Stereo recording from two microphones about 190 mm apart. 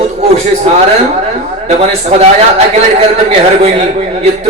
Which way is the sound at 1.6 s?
35° right (ahead or behind).